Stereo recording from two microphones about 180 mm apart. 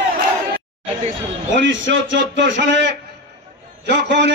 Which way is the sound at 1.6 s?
90° right.